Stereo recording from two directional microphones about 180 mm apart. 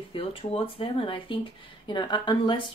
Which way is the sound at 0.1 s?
30° left (ahead or behind).